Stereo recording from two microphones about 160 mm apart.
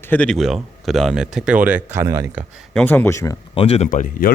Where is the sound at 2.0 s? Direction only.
20° right (ahead or behind).